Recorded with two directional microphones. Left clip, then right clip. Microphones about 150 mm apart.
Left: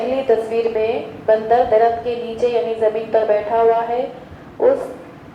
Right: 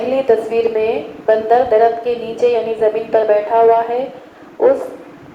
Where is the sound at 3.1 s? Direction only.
60° right (ahead or behind).